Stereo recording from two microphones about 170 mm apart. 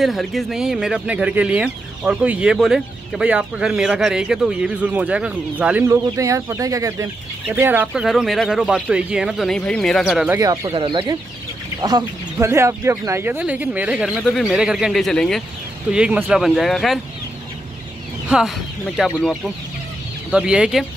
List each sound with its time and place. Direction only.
0.0 s speech: centre (ahead or behind)
10.3 s speech: 20° right (ahead or behind)
10.7 s speech: 30° right (ahead or behind); by 17.0 s centre (ahead or behind)
18.3 s speech: centre (ahead or behind)